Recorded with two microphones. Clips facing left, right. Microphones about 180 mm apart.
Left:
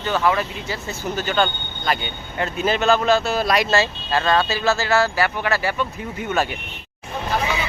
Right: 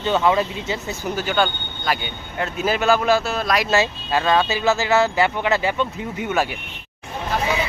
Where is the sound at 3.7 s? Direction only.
15° right (ahead or behind).